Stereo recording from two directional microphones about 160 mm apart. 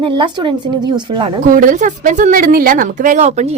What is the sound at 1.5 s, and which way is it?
A woman's voice, 55° right (ahead or behind).